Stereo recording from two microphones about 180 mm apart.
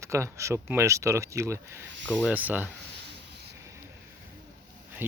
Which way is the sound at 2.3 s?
10° right (ahead or behind).